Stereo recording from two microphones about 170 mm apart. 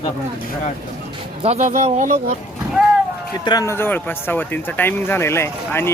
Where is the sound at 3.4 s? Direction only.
25° left (ahead or behind).